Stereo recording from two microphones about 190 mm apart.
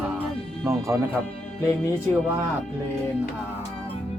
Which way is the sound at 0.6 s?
15° right (ahead or behind).